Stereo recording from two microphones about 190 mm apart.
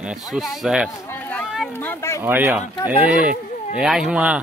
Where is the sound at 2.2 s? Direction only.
10° right (ahead or behind).